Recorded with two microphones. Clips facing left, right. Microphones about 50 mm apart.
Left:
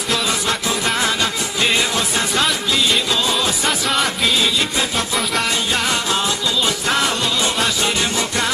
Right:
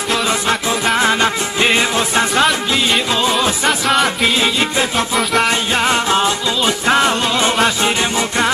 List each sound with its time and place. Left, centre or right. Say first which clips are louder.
0.1 s music: right 3 dB; right
3.6 s music: right 6 dB; centre
4.4 s music: right 3 dB; right